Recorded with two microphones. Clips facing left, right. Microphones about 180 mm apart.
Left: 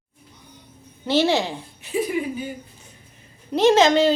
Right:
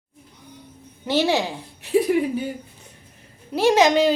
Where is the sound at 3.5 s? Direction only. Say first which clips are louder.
Left 1 dB; 10° right (ahead or behind).